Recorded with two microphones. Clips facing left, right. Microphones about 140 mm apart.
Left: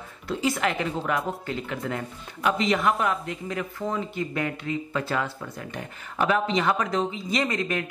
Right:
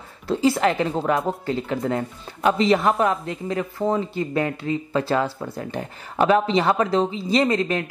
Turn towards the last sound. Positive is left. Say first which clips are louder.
# right 6 dB
turn(degrees=-30)  # may be behind; listen again after turning